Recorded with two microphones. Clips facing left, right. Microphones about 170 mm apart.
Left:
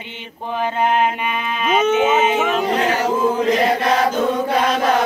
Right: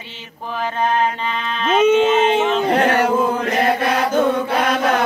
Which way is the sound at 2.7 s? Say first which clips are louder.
Right 3 dB; 60° right (ahead or behind).